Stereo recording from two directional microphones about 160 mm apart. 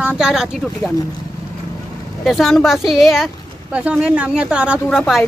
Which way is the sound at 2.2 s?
Centre (ahead or behind).